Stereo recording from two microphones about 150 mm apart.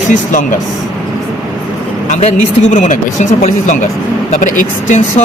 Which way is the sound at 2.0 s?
50° left (ahead or behind).